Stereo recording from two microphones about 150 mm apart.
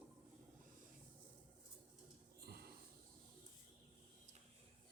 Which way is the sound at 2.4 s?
90° right.